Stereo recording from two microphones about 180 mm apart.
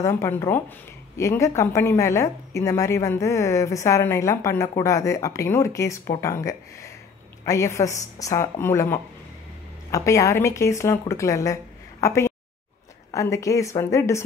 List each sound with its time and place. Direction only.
0.0 s speech: 15° left (ahead or behind)